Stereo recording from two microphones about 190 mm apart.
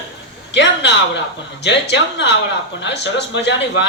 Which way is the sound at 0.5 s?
65° left (ahead or behind).